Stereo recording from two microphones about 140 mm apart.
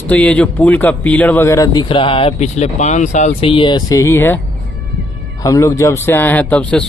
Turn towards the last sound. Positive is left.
turn(degrees=10)  # may be behind; listen again after turning